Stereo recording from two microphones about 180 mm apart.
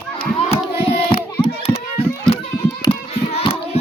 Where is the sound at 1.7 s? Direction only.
35° left (ahead or behind).